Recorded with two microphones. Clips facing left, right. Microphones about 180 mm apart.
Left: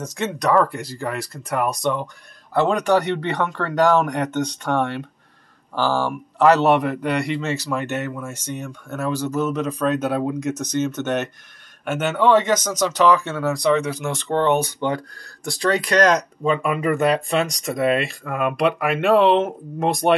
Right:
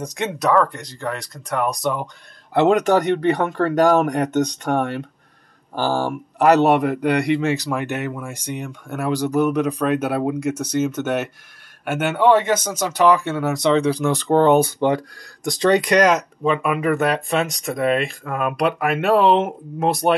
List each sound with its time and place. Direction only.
0.0 s a man's voice: 15° right (ahead or behind)
0.4 s speech: centre (ahead or behind)
2.8 s speech: 20° right (ahead or behind)
3.2 s speech: 45° right (ahead or behind)
5.8 s a man's voice: 15° right (ahead or behind); by 14.7 s 35° right (ahead or behind)
15.4 s speech: 20° right (ahead or behind)
16.1 s speech: 5° right (ahead or behind)